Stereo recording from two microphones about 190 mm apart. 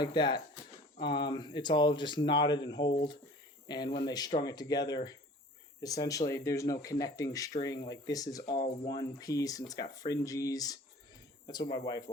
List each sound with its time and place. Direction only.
0.0 s speech: 25° left (ahead or behind)